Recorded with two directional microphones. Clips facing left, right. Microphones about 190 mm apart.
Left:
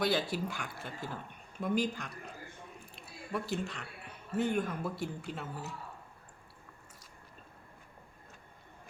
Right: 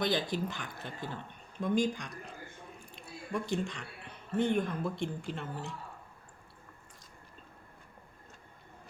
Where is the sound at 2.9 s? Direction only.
5° left (ahead or behind).